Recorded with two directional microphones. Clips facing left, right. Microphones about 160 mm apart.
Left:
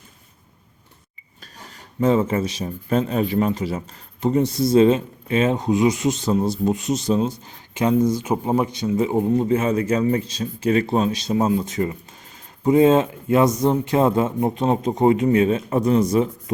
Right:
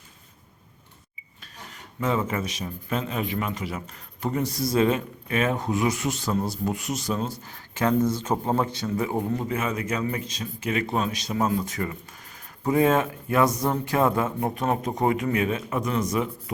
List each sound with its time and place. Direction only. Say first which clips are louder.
1.7 s speech: left 8 dB; 35° left (ahead or behind)